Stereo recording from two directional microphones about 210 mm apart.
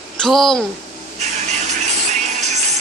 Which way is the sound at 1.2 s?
35° right (ahead or behind).